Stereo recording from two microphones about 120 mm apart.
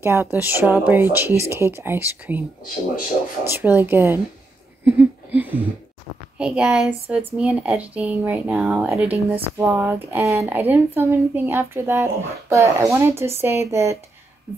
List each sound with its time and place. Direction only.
0.0 s speech: 20° right (ahead or behind)
3.4 s speech: 15° right (ahead or behind)
4.8 s a sound: 15° right (ahead or behind)
6.3 s speech: 10° right (ahead or behind)